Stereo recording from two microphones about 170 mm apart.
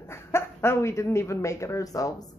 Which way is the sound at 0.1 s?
15° left (ahead or behind).